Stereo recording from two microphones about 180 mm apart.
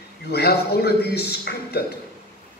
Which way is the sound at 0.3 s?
65° left (ahead or behind).